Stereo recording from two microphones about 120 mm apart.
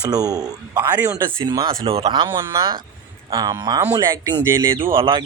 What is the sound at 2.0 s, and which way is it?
Speech, 40° right (ahead or behind).